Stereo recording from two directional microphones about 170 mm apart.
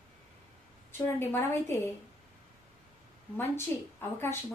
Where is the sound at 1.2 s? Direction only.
15° left (ahead or behind).